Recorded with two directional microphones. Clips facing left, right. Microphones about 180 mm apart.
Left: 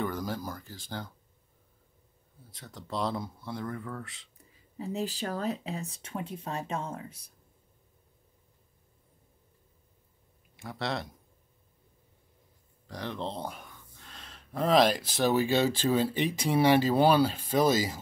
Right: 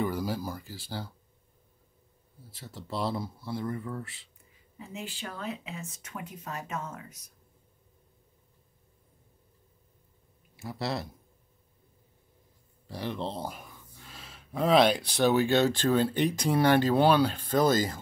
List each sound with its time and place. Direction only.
0.0 s speech: 10° right (ahead or behind)
2.5 s speech: 5° right (ahead or behind)
4.7 s speech: 35° left (ahead or behind)
10.6 s speech: 5° right (ahead or behind)
12.8 s speech: 5° right (ahead or behind)